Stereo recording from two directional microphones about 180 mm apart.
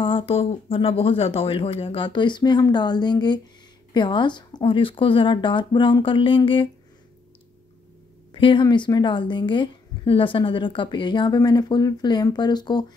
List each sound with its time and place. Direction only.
0.0 s a woman's voice: 30° left (ahead or behind)
8.3 s a woman's voice: 30° left (ahead or behind)